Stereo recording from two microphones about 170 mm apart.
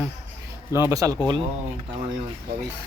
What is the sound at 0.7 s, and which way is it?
Speech, 20° right (ahead or behind).